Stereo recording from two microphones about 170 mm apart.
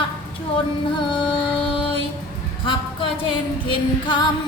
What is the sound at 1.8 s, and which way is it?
Music, 30° left (ahead or behind).